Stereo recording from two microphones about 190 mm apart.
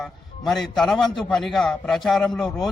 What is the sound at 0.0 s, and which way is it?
A man's voice, centre (ahead or behind).